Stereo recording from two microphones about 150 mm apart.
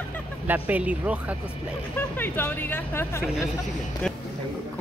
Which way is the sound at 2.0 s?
15° left (ahead or behind).